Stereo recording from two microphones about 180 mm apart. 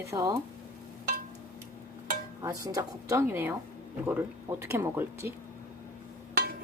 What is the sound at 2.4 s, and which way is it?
A woman's voice, 20° right (ahead or behind).